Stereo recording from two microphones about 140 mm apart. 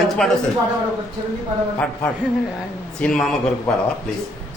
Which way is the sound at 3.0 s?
5° left (ahead or behind).